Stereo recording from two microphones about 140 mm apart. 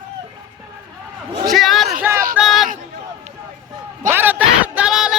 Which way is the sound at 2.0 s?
15° right (ahead or behind).